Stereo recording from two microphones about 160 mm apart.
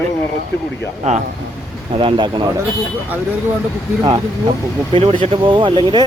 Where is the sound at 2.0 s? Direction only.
30° right (ahead or behind).